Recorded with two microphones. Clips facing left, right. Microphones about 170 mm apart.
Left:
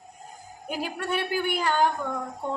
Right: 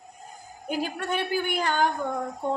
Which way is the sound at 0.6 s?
10° left (ahead or behind).